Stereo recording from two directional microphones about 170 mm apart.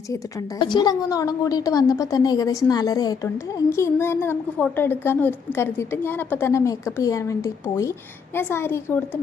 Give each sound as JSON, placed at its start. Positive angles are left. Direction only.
{"t": 0.1, "sound": "a woman's voice", "side_deg": 20}